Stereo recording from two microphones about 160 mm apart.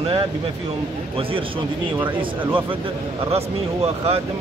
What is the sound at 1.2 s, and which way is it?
Speech, 35° right (ahead or behind).